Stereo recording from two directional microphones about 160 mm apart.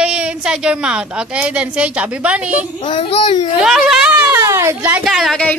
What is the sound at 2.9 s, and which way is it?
Speech, 35° left (ahead or behind).